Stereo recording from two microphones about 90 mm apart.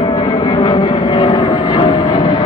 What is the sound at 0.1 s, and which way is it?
Vehicle, 40° left (ahead or behind).